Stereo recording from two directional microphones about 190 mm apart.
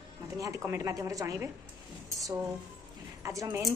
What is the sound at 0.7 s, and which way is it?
Speech, 15° right (ahead or behind).